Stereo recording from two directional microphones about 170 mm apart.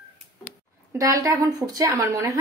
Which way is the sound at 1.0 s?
20° right (ahead or behind).